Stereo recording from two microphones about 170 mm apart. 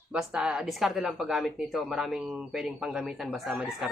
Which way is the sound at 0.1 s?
5° right (ahead or behind).